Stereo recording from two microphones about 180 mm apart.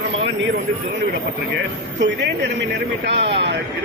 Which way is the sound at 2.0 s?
75° right (ahead or behind).